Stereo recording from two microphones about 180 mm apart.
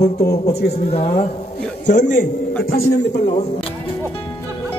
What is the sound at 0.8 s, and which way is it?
Speech, 35° left (ahead or behind).